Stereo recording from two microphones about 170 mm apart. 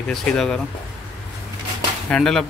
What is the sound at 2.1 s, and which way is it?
Speech, 5° left (ahead or behind).